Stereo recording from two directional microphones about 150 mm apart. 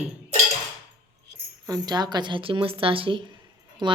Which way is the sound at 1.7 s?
25° right (ahead or behind).